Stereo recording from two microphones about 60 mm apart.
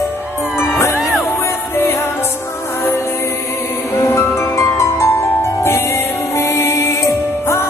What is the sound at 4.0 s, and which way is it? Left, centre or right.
Music, left.